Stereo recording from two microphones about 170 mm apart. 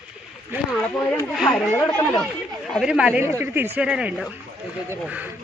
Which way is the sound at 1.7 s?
10° left (ahead or behind).